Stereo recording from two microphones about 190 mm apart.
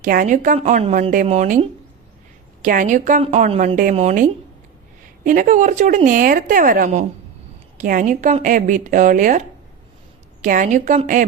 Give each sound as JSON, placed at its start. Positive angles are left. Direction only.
{"t": 0.0, "sound": "a woman's voice", "side_deg": -45}